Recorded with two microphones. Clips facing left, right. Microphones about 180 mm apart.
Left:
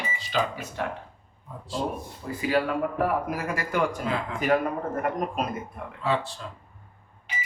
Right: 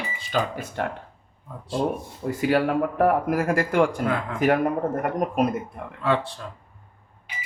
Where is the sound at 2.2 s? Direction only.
55° right (ahead or behind).